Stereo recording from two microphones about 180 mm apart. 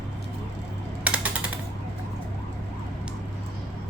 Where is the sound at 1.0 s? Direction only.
10° right (ahead or behind).